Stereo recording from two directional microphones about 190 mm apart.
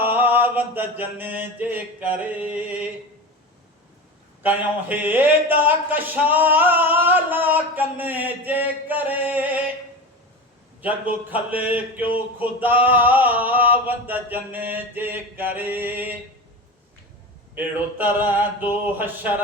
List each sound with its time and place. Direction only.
0.0 s mantra: 10° right (ahead or behind)
4.4 s male singing: 10° right (ahead or behind)
10.8 s male singing: 10° right (ahead or behind)
17.5 s male singing: 10° right (ahead or behind)